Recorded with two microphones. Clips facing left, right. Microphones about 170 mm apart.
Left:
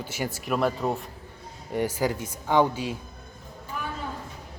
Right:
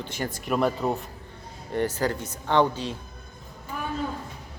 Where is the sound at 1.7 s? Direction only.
10° left (ahead or behind).